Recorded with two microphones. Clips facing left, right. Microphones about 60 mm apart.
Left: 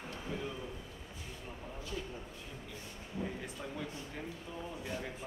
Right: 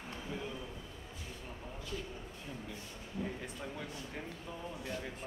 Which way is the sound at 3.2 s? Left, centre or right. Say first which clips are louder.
Even; centre.